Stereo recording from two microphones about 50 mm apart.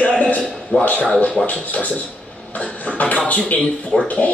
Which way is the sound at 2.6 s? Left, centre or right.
Left.